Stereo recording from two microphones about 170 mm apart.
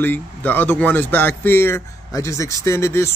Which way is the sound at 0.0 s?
10° left (ahead or behind).